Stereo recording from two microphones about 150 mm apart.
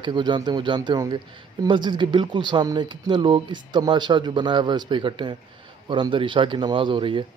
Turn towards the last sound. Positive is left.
turn(degrees=-35)  # may be behind; listen again after turning